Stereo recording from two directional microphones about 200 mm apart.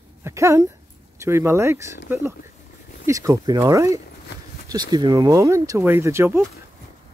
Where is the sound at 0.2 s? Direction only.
15° right (ahead or behind).